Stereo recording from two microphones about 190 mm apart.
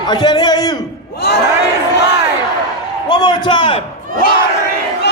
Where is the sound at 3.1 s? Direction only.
20° left (ahead or behind).